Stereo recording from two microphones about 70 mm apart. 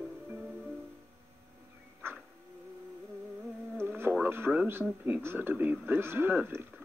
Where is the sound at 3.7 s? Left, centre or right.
Right.